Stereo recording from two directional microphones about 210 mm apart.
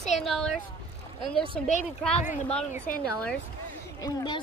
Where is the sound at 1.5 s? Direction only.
35° left (ahead or behind).